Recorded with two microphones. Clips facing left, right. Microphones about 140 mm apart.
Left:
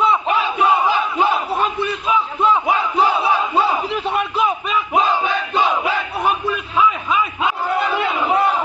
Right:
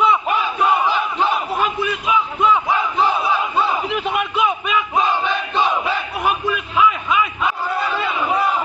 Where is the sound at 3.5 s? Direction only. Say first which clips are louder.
Left 1 dB; 35° left (ahead or behind).